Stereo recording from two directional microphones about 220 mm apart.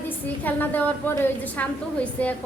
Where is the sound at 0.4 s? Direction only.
10° left (ahead or behind).